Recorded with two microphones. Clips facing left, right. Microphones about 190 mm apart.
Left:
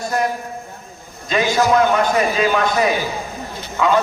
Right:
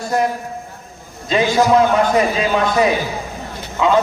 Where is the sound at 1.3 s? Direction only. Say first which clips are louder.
Right 2 dB; 30° right (ahead or behind).